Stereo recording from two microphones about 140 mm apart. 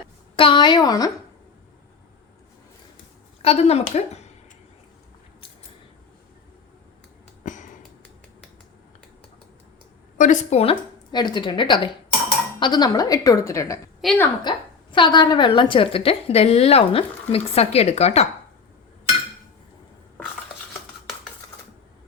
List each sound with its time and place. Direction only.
0.3 s a woman's voice: 35° left (ahead or behind)
3.4 s a woman's voice: 45° left (ahead or behind)
7.4 s sniff: 65° left (ahead or behind)
10.2 s a woman's voice: 65° left (ahead or behind)
11.1 s a woman's voice: 30° left (ahead or behind)
14.0 s a woman's voice: centre (ahead or behind)
14.5 s a woman's voice: 35° left (ahead or behind); by 18.3 s 50° left (ahead or behind)